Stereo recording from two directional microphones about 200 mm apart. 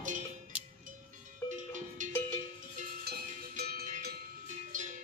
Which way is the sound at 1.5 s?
40° right (ahead or behind).